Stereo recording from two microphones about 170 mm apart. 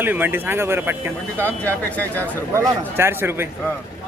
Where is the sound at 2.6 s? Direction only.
15° right (ahead or behind).